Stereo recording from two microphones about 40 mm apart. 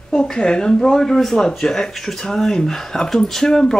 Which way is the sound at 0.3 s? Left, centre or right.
Centre.